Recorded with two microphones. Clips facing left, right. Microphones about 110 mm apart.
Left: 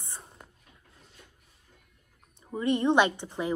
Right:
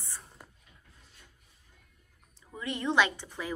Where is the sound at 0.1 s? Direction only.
15° left (ahead or behind).